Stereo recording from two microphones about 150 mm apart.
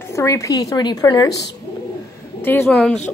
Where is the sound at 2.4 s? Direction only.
15° left (ahead or behind).